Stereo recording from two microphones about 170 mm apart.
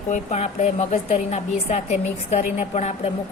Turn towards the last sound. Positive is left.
turn(degrees=40)  # may be behind; listen again after turning